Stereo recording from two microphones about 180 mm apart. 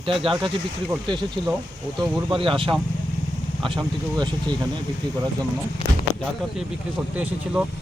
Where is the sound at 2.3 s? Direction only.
30° right (ahead or behind).